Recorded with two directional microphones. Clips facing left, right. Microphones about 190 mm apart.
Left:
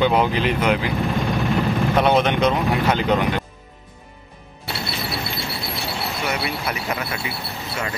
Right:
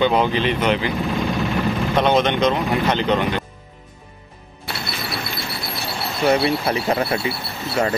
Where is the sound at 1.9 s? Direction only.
10° left (ahead or behind).